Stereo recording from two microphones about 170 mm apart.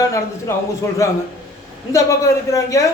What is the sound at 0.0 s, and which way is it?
Speech, 20° left (ahead or behind).